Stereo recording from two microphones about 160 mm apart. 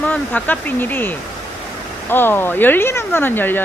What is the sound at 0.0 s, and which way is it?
Speech, 10° left (ahead or behind).